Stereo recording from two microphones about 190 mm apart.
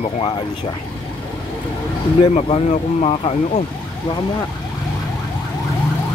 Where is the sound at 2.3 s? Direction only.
35° left (ahead or behind).